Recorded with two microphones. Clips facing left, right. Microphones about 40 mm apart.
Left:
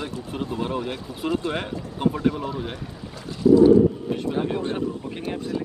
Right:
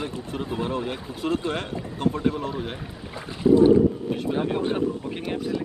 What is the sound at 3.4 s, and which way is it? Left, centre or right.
Boat, right.